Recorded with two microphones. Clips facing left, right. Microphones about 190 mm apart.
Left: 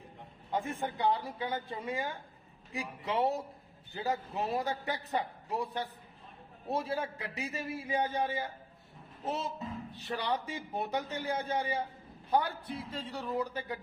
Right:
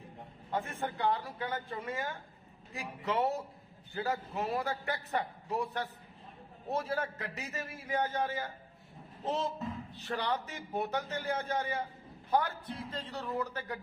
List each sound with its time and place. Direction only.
0.5 s a man's voice: 15° left (ahead or behind)
10.0 s a man's voice: 10° left (ahead or behind)